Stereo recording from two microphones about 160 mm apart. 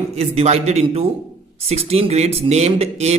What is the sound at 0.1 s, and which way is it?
A man's voice, 45° right (ahead or behind).